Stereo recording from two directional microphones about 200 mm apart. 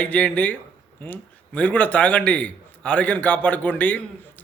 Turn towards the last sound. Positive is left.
turn(degrees=10)  # may be behind; listen again after turning